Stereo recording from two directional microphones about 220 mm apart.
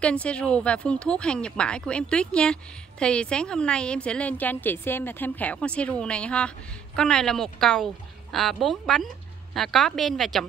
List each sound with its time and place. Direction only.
0.0 s speech: 5° left (ahead or behind)